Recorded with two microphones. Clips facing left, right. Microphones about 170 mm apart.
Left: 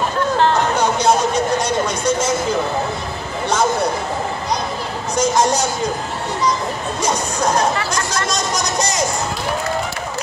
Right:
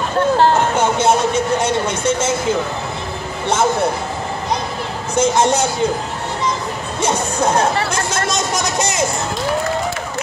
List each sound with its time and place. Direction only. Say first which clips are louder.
0.4 s a sound: left 1 dB; 25° right (ahead or behind)
3.4 s speech: right 1 dB; 25° right (ahead or behind)
5.1 s speech: right 2 dB; 25° right (ahead or behind)
7.0 s chatter: right 3 dB; 25° right (ahead or behind)